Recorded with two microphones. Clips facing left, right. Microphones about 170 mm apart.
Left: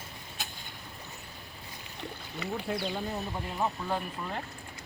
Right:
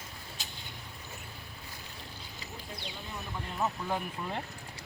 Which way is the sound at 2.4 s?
70° left (ahead or behind).